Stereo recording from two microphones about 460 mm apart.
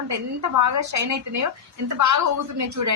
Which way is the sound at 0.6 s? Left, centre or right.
Right.